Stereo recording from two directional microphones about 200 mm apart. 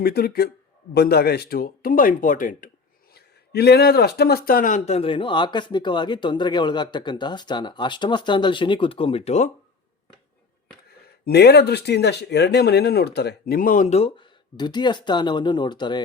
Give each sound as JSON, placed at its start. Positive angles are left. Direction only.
{"t": 0.0, "sound": "speech", "side_deg": 50}
{"t": 3.2, "sound": "speech", "side_deg": 55}
{"t": 11.3, "sound": "speech", "side_deg": 55}